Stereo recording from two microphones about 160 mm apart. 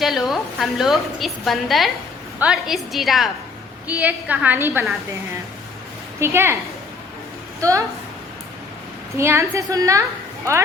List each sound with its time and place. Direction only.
0.0 s a woman's voice: centre (ahead or behind)
6.1 s a woman's voice: 15° right (ahead or behind)
7.6 s a woman's voice: 20° right (ahead or behind)
9.1 s a woman's voice: 15° right (ahead or behind)